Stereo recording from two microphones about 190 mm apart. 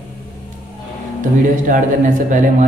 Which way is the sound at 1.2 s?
45° right (ahead or behind).